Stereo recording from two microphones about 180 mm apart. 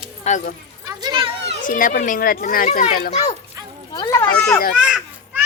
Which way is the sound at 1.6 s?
50° left (ahead or behind).